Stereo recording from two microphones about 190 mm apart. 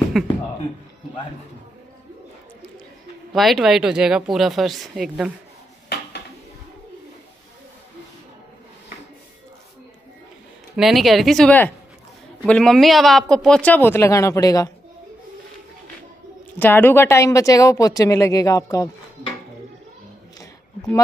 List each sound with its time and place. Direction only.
0.2 s speech: centre (ahead or behind)
3.3 s speech: centre (ahead or behind)
5.9 s a sound: 60° left (ahead or behind)
10.8 s a woman's voice: centre (ahead or behind); by 14.7 s 20° left (ahead or behind)
16.5 s a woman's voice: 10° left (ahead or behind)